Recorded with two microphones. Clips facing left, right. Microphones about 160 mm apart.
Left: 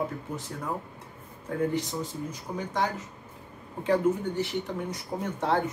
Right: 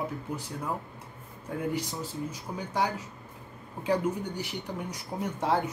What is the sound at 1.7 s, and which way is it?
Speech, 10° right (ahead or behind).